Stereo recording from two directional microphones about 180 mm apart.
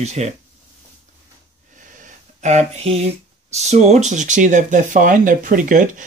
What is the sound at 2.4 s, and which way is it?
Speech, 40° right (ahead or behind).